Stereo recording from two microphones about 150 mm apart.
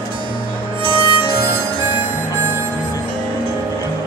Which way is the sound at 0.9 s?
30° left (ahead or behind).